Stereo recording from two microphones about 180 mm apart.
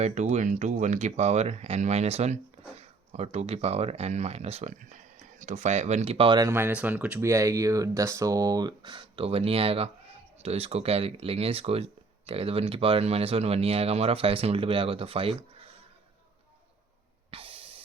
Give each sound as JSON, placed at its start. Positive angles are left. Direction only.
{"t": 0.0, "sound": "speech", "side_deg": -40}
{"t": 6.5, "sound": "speech", "side_deg": -10}
{"t": 17.3, "sound": "snort", "side_deg": -30}